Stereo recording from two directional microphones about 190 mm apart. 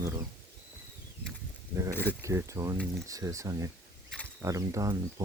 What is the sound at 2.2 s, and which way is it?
Speech, 15° right (ahead or behind).